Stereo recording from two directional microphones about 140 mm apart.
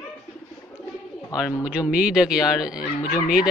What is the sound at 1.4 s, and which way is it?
A man's voice, 10° right (ahead or behind).